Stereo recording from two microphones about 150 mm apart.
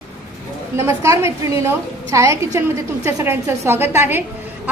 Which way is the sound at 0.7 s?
20° right (ahead or behind).